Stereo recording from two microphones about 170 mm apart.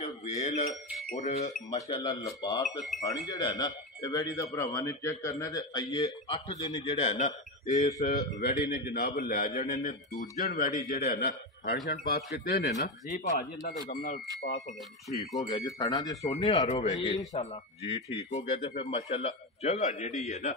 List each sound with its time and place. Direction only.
0.0 s a sound: 40° left (ahead or behind)
1.1 s a man's voice: 45° left (ahead or behind)
2.0 s speech: 20° left (ahead or behind)
7.0 s a man's voice: 40° left (ahead or behind)
8.4 s a man's voice: 60° left (ahead or behind)
13.1 s a man's voice: 45° left (ahead or behind)
15.3 s a man's voice: 20° left (ahead or behind); by 20.5 s 40° left (ahead or behind)